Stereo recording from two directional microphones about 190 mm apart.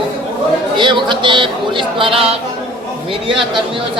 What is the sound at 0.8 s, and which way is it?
Speech, 25° right (ahead or behind).